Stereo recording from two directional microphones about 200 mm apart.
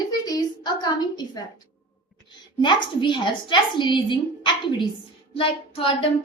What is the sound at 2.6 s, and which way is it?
A woman's voice, 25° left (ahead or behind).